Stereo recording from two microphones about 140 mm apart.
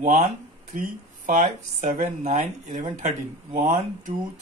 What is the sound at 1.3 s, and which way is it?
Speech, 55° right (ahead or behind).